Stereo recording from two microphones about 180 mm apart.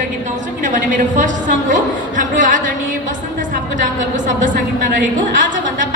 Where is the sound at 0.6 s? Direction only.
45° right (ahead or behind).